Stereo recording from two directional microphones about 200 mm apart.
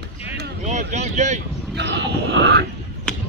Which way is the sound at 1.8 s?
60° right (ahead or behind).